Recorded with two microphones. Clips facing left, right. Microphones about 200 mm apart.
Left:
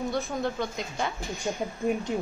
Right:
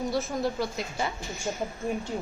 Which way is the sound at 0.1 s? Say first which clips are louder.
Right 1 dB; 5° right (ahead or behind).